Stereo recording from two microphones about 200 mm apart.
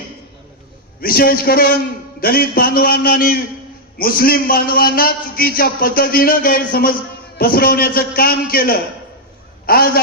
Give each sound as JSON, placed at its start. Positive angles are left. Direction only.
{"t": 1.0, "sound": "a man's voice", "side_deg": 50}